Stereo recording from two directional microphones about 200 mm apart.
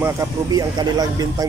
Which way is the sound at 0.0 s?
15° right (ahead or behind).